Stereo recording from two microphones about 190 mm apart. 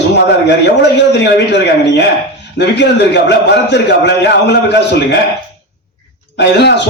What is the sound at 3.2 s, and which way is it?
A man's voice, 65° left (ahead or behind).